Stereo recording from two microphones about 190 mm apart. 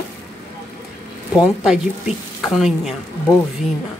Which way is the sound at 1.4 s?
5° right (ahead or behind).